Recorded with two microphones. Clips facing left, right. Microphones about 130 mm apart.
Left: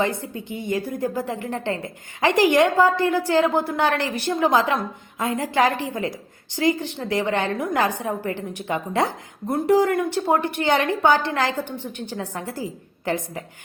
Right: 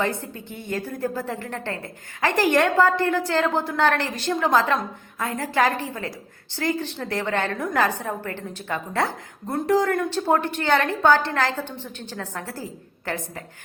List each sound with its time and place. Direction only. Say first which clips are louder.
0.0 s a woman's voice: left 2 dB; 15° left (ahead or behind)